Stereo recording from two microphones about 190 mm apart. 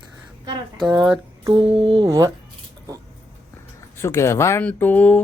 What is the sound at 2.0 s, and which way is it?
Speech, 20° right (ahead or behind).